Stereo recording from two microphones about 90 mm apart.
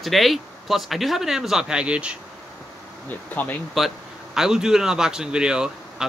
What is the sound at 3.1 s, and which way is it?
Bee, 20° left (ahead or behind).